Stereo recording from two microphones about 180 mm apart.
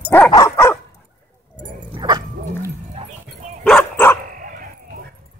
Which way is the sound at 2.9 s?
35° right (ahead or behind).